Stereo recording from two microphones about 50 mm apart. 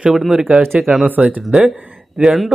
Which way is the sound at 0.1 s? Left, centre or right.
Centre.